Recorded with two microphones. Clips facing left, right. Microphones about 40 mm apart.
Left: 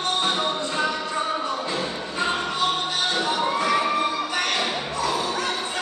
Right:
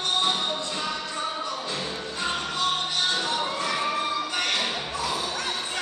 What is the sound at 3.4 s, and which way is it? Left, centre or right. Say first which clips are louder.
Children shouting: left 5 dB; centre.